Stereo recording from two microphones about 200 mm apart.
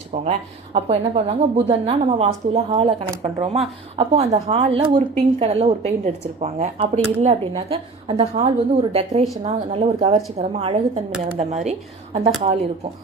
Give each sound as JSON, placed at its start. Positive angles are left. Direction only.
{"t": 0.1, "sound": "speech", "side_deg": -30}